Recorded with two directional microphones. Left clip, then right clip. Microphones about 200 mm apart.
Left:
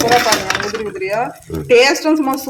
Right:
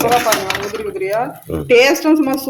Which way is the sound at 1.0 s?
Centre (ahead or behind).